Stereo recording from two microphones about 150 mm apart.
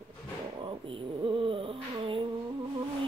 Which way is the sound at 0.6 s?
35° right (ahead or behind).